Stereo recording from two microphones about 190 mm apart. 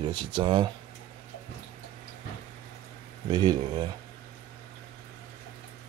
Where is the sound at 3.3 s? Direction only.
20° right (ahead or behind).